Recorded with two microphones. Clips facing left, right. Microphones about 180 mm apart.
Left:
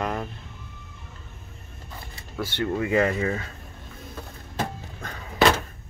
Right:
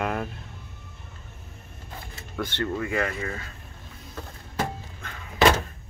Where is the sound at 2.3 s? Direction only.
5° left (ahead or behind).